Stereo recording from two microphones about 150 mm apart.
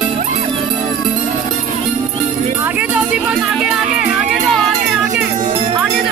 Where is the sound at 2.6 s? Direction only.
10° right (ahead or behind).